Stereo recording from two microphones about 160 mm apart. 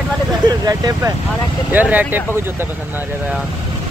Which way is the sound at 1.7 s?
10° right (ahead or behind).